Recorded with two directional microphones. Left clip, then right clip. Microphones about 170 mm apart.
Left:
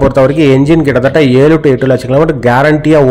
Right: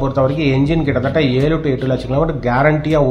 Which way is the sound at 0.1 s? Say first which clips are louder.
Left 9 dB; 45° left (ahead or behind).